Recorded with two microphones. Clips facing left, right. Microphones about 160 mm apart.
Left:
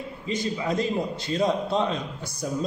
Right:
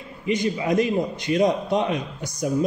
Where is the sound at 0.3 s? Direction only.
15° right (ahead or behind).